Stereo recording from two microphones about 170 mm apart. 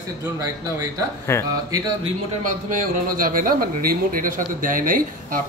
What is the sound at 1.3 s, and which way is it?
Speech, 15° left (ahead or behind).